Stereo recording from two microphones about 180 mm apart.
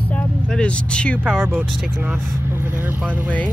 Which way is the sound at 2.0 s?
10° right (ahead or behind).